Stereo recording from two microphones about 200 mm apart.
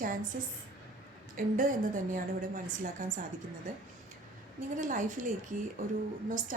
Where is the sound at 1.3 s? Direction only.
40° right (ahead or behind).